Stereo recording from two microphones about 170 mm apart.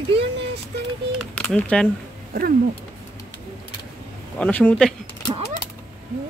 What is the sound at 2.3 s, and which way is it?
Speech, 60° right (ahead or behind).